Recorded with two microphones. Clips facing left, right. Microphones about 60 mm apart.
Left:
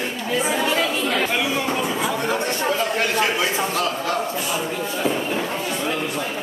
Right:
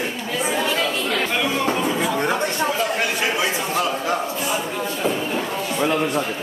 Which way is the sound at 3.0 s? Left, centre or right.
Centre.